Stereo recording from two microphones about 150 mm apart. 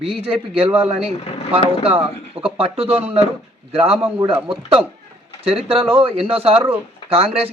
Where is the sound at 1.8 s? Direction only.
40° right (ahead or behind).